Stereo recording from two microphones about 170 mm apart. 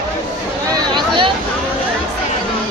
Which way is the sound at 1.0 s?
30° right (ahead or behind).